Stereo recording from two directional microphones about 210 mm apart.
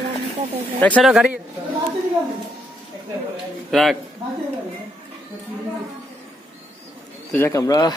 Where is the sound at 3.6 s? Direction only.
Centre (ahead or behind).